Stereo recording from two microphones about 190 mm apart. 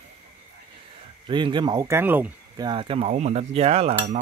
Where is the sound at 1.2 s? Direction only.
25° right (ahead or behind).